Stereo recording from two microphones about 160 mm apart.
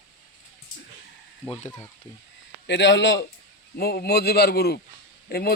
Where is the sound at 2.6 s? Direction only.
90° left.